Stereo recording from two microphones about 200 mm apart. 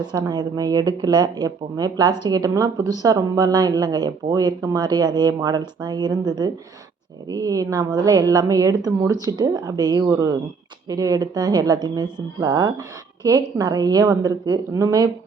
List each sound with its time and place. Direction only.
0.0 s a woman's voice: 20° right (ahead or behind)